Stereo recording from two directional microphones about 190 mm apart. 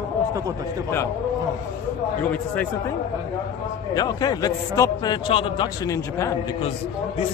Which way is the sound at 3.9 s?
20° left (ahead or behind).